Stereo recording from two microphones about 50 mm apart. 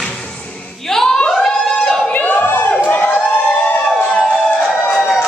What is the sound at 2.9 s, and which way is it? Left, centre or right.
Crowd, left.